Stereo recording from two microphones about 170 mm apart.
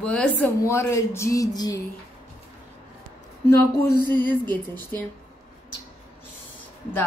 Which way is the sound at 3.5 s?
15° left (ahead or behind).